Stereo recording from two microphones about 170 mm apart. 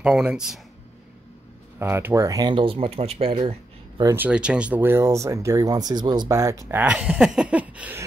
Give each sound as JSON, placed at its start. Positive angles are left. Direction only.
{"t": 0.0, "sound": "speech", "side_deg": -5}
{"t": 1.8, "sound": "speech", "side_deg": -15}
{"t": 4.0, "sound": "speech", "side_deg": -15}
{"t": 6.7, "sound": "speech", "side_deg": -10}